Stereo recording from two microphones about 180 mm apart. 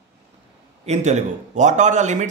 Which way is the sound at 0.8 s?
40° right (ahead or behind).